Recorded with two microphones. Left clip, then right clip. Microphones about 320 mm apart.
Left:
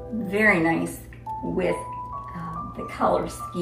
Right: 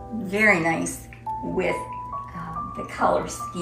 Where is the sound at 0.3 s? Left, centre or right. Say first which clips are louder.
Right 1 dB; centre.